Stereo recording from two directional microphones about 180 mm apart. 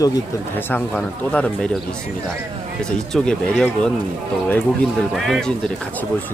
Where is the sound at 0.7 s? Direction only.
5° left (ahead or behind).